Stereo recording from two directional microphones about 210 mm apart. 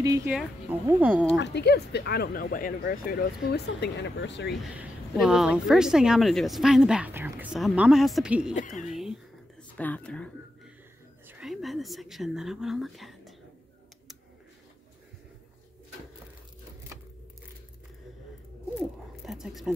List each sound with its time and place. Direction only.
0.0 s a woman's voice: 15° right (ahead or behind)
1.4 s speech: 55° left (ahead or behind)
4.6 s a woman's voice: 5° right (ahead or behind)
8.5 s speech: 35° left (ahead or behind)
8.8 s whispering: centre (ahead or behind)
11.2 s a woman's voice: 5° right (ahead or behind)
18.8 s a sound: centre (ahead or behind)